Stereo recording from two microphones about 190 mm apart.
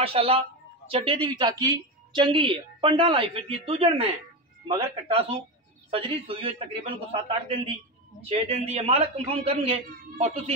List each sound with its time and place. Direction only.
0.0 s a man's voice: 30° right (ahead or behind)
8.2 s a man's voice: 35° right (ahead or behind)